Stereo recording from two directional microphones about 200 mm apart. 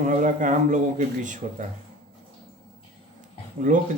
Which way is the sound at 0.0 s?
40° right (ahead or behind).